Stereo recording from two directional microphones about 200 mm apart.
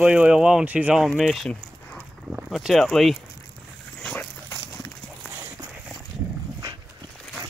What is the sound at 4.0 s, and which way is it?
Dog, 5° left (ahead or behind).